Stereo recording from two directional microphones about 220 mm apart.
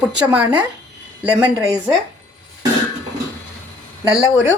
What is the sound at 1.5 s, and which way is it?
Speech, 15° right (ahead or behind).